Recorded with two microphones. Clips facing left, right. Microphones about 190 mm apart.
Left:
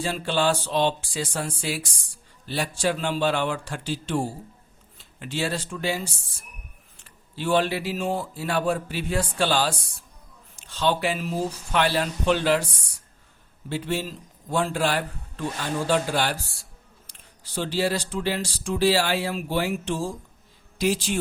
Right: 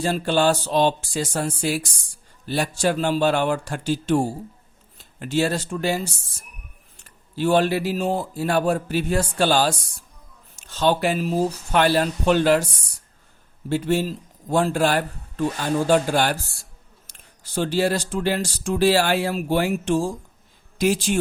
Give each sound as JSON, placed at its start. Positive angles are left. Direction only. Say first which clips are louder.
{"t": 0.0, "sound": "speech", "louder": "right 4 dB", "side_deg": -45}
{"t": 7.0, "sound": "speech", "louder": "right 7 dB", "side_deg": -45}
{"t": 13.7, "sound": "speech", "louder": "right 6 dB", "side_deg": -45}